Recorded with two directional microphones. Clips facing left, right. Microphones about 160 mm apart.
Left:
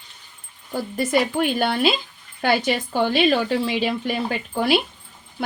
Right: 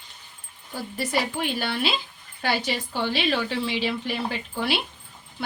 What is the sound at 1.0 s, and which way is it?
Speech, 50° left (ahead or behind).